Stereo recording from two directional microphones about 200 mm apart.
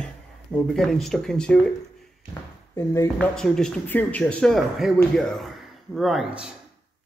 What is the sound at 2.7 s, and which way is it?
Speech, 15° left (ahead or behind).